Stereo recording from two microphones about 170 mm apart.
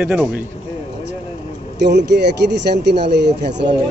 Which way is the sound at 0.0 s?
10° right (ahead or behind).